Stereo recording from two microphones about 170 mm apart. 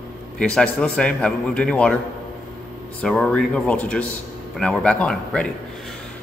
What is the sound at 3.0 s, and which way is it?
Speech, 5° left (ahead or behind).